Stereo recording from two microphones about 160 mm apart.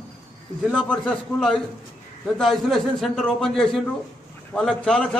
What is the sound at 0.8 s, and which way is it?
A man's voice, centre (ahead or behind).